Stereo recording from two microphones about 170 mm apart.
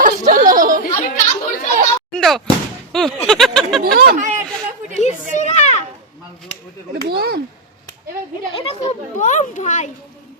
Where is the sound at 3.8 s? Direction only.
55° right (ahead or behind).